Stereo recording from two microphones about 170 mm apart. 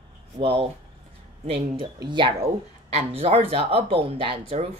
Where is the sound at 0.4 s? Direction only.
35° right (ahead or behind).